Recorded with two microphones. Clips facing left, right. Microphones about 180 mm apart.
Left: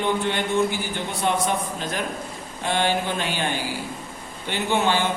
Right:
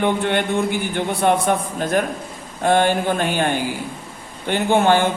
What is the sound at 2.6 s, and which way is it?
Speech, 50° right (ahead or behind).